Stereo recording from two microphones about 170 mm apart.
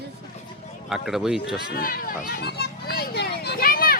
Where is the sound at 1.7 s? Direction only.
60° left (ahead or behind).